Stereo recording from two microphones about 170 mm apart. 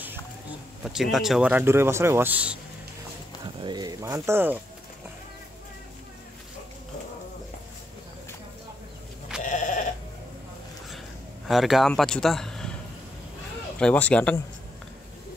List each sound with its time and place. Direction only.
0.8 s a man's voice: centre (ahead or behind)
3.6 s speech: 25° right (ahead or behind)
9.4 s sheep: 50° left (ahead or behind)
11.4 s a man's voice: centre (ahead or behind)
13.7 s speech: 5° left (ahead or behind)